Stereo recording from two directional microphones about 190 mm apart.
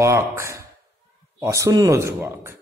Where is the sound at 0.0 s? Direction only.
15° right (ahead or behind).